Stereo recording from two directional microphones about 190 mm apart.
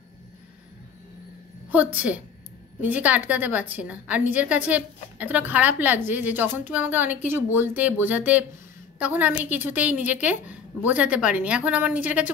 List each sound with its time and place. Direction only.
1.7 s a woman's voice: 10° right (ahead or behind)